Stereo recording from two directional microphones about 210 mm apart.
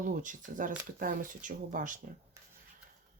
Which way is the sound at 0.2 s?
40° right (ahead or behind).